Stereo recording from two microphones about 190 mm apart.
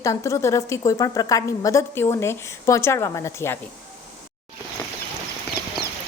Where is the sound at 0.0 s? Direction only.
15° left (ahead or behind).